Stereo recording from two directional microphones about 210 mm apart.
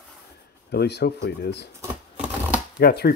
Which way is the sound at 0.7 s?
50° left (ahead or behind).